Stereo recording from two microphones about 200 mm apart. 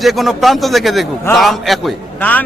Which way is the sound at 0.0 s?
Centre (ahead or behind).